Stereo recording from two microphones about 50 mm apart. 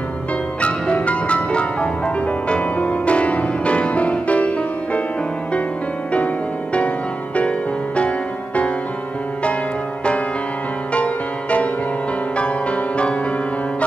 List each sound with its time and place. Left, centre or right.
0.6 s music: left
6.1 s music: left
12.4 s music: left